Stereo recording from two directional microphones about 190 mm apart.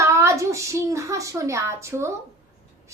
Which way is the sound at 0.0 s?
15° right (ahead or behind).